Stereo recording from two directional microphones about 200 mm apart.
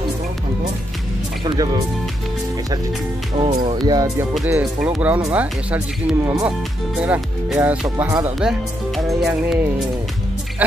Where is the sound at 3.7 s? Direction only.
20° right (ahead or behind).